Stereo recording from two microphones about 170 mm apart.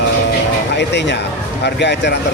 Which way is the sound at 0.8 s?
90° left.